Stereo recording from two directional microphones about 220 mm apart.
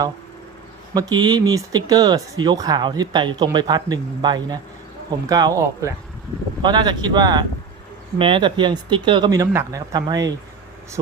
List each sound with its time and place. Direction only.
0.9 s speech: 15° right (ahead or behind)